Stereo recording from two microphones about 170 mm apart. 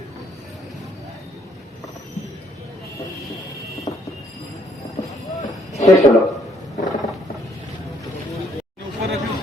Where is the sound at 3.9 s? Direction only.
35° left (ahead or behind).